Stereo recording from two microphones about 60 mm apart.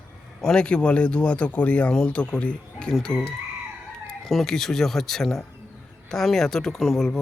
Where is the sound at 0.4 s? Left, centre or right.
Centre.